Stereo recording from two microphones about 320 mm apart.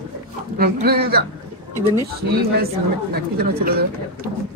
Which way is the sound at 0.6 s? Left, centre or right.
Right.